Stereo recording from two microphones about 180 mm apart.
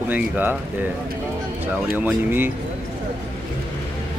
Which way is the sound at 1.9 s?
10° right (ahead or behind).